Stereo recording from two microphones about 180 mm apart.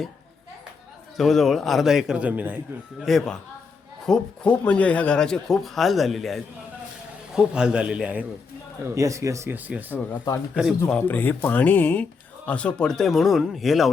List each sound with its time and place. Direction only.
1.1 s speech: centre (ahead or behind)
3.0 s speech: centre (ahead or behind)
9.0 s speech: 15° right (ahead or behind)
10.8 s speech: 10° left (ahead or behind)